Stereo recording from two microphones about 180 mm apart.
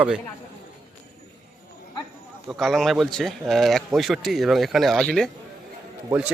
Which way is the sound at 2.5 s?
Centre (ahead or behind).